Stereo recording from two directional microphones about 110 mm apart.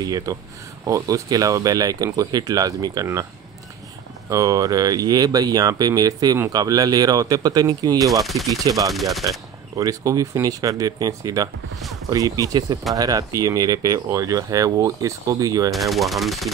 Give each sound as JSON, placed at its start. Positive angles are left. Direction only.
{"t": 0.0, "sound": "speech", "side_deg": -35}
{"t": 4.3, "sound": "speech", "side_deg": -30}
{"t": 8.1, "sound": "speech", "side_deg": 0}
{"t": 8.5, "sound": "speech", "side_deg": -30}
{"t": 8.9, "sound": "speech", "side_deg": 0}
{"t": 9.8, "sound": "speech", "side_deg": -30}
{"t": 15.7, "sound": "speech", "side_deg": 0}